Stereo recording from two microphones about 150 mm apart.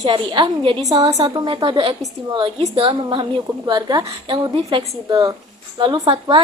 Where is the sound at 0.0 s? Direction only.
30° right (ahead or behind).